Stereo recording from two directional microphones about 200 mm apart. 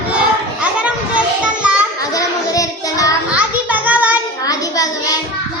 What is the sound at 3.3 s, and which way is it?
Children playing, 5° right (ahead or behind).